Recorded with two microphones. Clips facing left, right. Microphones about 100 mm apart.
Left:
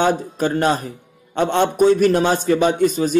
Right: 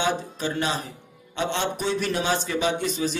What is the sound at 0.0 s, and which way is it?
A man's voice, 45° left (ahead or behind).